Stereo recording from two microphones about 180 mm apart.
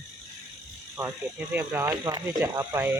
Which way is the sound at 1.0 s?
10° right (ahead or behind).